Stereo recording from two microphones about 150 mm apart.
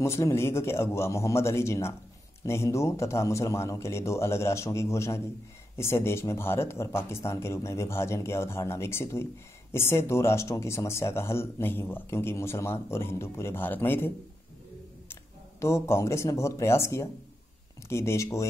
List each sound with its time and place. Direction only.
0.0 s speech: 20° left (ahead or behind)
15.6 s speech: 20° left (ahead or behind)